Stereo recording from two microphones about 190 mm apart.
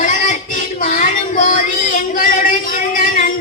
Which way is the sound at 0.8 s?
45° left (ahead or behind).